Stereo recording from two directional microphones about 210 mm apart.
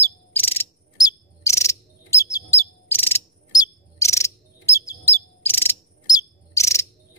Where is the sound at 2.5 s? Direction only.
10° left (ahead or behind).